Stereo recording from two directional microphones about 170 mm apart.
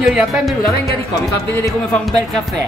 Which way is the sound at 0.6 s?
20° left (ahead or behind).